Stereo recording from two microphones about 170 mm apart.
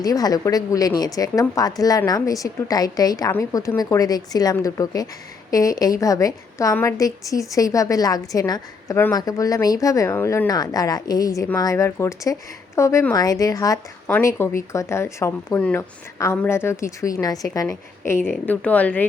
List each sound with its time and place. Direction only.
0.0 s a woman's voice: 20° left (ahead or behind)